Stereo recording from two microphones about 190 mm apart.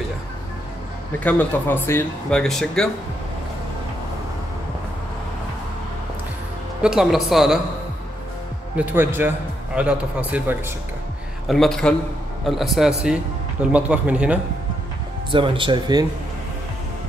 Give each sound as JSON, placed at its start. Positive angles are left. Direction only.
{"t": 1.2, "sound": "speech", "side_deg": 10}
{"t": 6.8, "sound": "speech", "side_deg": 0}
{"t": 8.7, "sound": "speech", "side_deg": -10}
{"t": 11.4, "sound": "speech", "side_deg": 0}
{"t": 15.3, "sound": "speech", "side_deg": -25}